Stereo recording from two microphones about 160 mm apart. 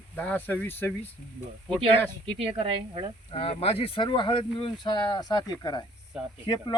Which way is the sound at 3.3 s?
35° left (ahead or behind).